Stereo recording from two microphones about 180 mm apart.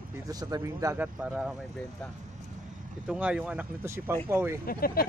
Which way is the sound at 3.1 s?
5° right (ahead or behind).